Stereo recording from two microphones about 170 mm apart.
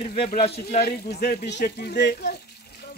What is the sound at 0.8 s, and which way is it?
Speech, 70° left (ahead or behind).